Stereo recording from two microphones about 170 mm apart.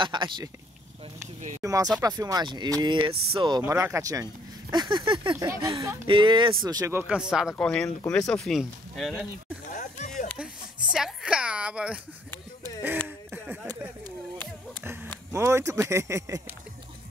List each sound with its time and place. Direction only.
0.0 s speech: 25° right (ahead or behind)
1.2 s speech: 45° right (ahead or behind)
1.6 s speech: 20° right (ahead or behind)
5.3 s speech: 15° right (ahead or behind)
6.0 s speech: 30° right (ahead or behind); by 9.3 s centre (ahead or behind)
9.7 s a sound: 45° left (ahead or behind)
10.3 s a sound: 5° right (ahead or behind)
14.8 s a sound: 15° right (ahead or behind)
15.3 s speech: 15° right (ahead or behind)